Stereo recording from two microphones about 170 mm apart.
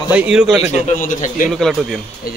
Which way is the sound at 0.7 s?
45° left (ahead or behind).